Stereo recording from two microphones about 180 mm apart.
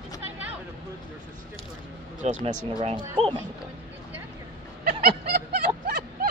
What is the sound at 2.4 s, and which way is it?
Speech, 30° right (ahead or behind).